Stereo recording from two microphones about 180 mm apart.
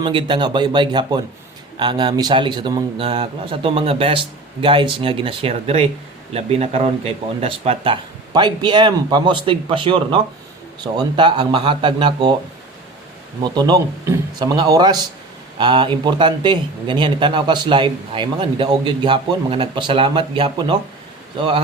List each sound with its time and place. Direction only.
0.0 s speech: 30° right (ahead or behind)
13.4 s speech: 25° right (ahead or behind)